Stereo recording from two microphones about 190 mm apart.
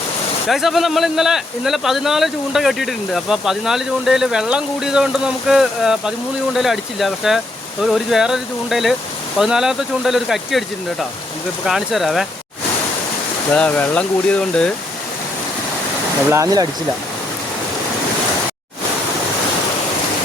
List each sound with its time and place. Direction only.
0.4 s speech: centre (ahead or behind)
11.6 s speech: centre (ahead or behind)
13.5 s speech: 10° left (ahead or behind)
16.3 s speech: 20° right (ahead or behind)